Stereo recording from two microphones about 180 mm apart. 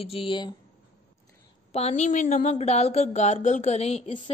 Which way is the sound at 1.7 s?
35° left (ahead or behind).